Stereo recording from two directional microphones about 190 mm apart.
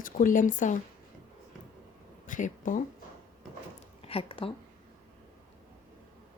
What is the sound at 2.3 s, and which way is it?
Speech, 40° left (ahead or behind).